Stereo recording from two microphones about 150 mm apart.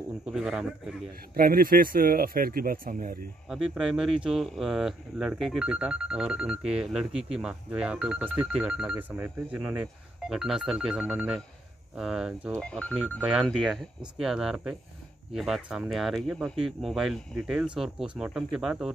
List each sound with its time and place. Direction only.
0.3 s speech: 5° right (ahead or behind)
1.3 s speech: 80° right
3.4 s speech: 5° right (ahead or behind)
12.5 s speech: 10° left (ahead or behind)
12.9 s speech: 5° right (ahead or behind)